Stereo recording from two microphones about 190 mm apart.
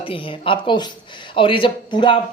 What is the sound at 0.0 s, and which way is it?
Speech, 30° left (ahead or behind).